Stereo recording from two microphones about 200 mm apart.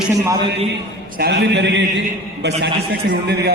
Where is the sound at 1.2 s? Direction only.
60° right (ahead or behind).